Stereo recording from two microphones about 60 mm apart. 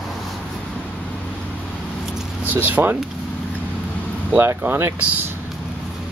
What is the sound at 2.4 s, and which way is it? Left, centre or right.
Speech, right.